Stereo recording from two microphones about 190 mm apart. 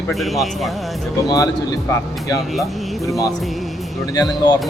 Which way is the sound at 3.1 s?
20° left (ahead or behind).